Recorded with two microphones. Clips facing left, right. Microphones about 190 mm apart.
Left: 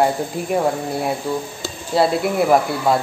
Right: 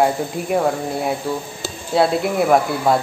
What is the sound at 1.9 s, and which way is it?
Speech, centre (ahead or behind).